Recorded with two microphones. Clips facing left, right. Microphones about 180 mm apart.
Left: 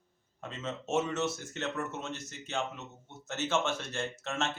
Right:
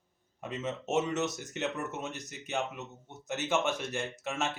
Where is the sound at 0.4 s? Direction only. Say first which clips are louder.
Right 3 dB; 15° right (ahead or behind).